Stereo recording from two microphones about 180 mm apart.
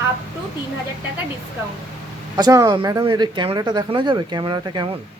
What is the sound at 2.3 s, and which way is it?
Speech, 20° right (ahead or behind).